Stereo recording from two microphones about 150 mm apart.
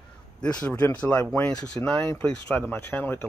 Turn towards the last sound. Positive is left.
turn(degrees=15)  # may be behind; listen again after turning